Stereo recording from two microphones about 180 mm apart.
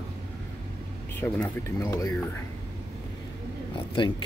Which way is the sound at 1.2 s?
10° left (ahead or behind).